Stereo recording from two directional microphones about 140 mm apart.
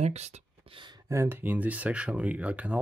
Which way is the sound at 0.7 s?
30° right (ahead or behind).